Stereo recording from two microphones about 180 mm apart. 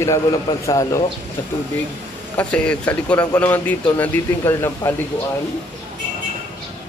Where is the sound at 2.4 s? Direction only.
5° left (ahead or behind).